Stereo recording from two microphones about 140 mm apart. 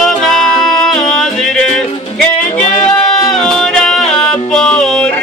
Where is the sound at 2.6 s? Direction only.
60° left (ahead or behind).